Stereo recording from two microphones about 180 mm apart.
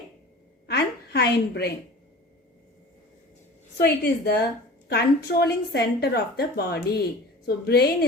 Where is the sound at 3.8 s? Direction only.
65° left (ahead or behind).